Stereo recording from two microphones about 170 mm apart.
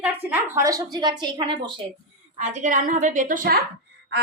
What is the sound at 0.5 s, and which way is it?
A woman's voice, 20° right (ahead or behind).